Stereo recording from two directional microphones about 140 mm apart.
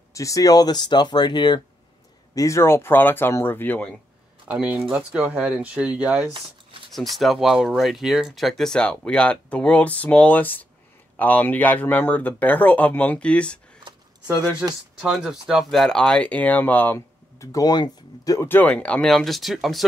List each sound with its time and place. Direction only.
0.1 s speech: 25° left (ahead or behind)
2.3 s speech: 20° left (ahead or behind)
4.5 s speech: 10° right (ahead or behind); by 13.6 s 10° left (ahead or behind)
13.8 s a sound: 25° right (ahead or behind)
15.0 s speech: 5° right (ahead or behind); by 17.5 s 15° left (ahead or behind)
17.5 s speech: 25° left (ahead or behind); by 19.8 s centre (ahead or behind)